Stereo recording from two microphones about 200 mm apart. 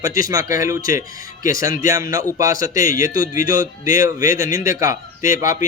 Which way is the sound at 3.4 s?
45° left (ahead or behind).